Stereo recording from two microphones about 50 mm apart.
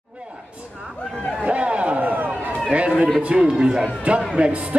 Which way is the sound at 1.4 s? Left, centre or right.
Right.